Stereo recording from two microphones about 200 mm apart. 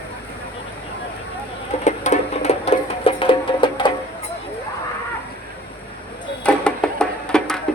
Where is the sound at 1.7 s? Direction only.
35° left (ahead or behind).